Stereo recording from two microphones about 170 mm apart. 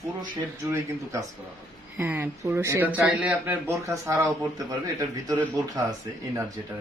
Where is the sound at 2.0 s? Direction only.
10° right (ahead or behind).